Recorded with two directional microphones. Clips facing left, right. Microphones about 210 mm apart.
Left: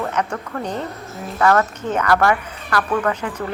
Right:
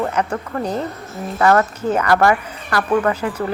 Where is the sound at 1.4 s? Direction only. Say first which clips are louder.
Right 2 dB; 10° right (ahead or behind).